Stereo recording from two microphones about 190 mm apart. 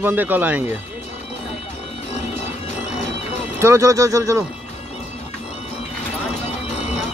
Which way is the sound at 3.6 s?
15° right (ahead or behind).